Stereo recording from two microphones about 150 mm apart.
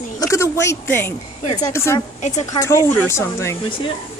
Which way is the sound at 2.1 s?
50° left (ahead or behind).